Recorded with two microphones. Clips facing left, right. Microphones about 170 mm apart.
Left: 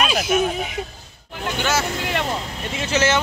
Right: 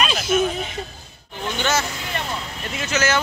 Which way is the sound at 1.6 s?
10° left (ahead or behind).